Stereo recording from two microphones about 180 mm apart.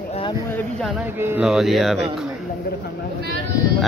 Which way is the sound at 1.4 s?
Centre (ahead or behind).